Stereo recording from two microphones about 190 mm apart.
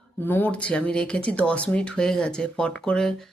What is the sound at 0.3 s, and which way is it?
Speech, 10° left (ahead or behind).